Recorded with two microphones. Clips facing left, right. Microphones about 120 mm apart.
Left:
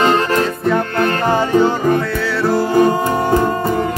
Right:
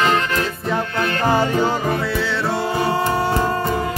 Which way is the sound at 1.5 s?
40° left (ahead or behind).